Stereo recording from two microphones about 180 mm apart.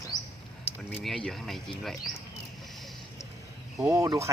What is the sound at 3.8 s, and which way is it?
Speech, 15° right (ahead or behind).